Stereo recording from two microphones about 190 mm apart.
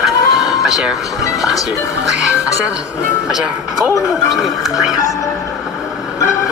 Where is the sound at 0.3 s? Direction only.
Centre (ahead or behind).